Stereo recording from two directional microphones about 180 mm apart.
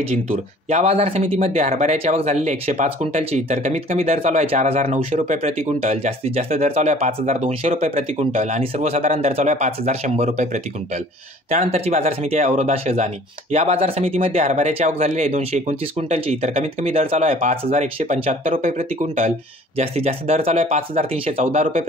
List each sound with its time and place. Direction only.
0.7 s speech: 35° right (ahead or behind)